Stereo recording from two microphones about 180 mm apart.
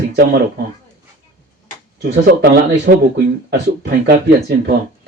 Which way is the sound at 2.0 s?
55° right (ahead or behind).